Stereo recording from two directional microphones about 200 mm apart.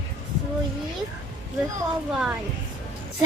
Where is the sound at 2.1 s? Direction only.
5° right (ahead or behind).